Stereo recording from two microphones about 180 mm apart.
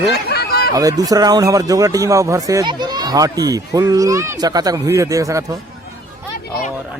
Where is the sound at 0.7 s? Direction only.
20° right (ahead or behind).